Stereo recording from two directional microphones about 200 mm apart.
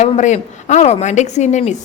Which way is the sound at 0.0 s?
35° left (ahead or behind).